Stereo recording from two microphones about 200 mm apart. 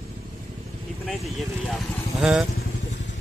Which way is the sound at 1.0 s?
Centre (ahead or behind).